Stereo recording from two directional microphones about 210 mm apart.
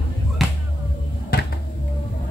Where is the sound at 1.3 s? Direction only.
45° left (ahead or behind).